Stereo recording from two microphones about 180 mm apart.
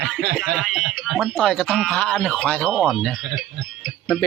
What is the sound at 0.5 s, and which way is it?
Speech, centre (ahead or behind).